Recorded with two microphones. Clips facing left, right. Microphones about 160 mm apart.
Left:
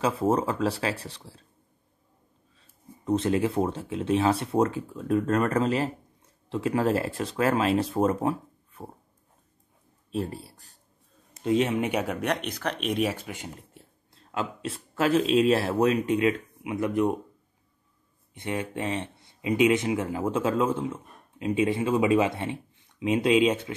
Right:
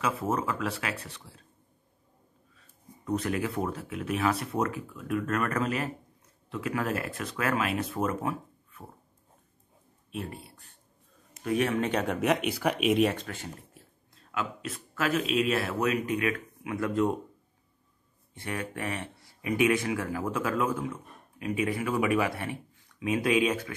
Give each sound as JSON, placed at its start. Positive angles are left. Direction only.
{"t": 0.0, "sound": "speech", "side_deg": 30}
{"t": 2.5, "sound": "speech", "side_deg": 25}
{"t": 10.1, "sound": "speech", "side_deg": 35}
{"t": 11.4, "sound": "speech", "side_deg": 20}
{"t": 13.7, "sound": "speech", "side_deg": 30}
{"t": 18.3, "sound": "speech", "side_deg": 20}